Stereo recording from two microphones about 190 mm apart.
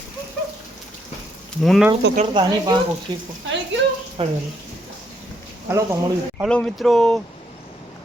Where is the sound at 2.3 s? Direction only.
20° right (ahead or behind).